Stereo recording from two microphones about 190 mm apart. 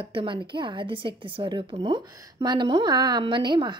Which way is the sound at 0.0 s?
30° right (ahead or behind).